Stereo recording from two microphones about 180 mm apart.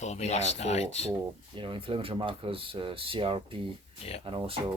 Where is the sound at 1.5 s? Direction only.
30° right (ahead or behind).